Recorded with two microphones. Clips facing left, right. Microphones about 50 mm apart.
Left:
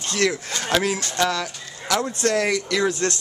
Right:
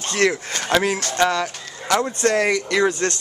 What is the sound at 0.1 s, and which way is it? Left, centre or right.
A man's voice, right.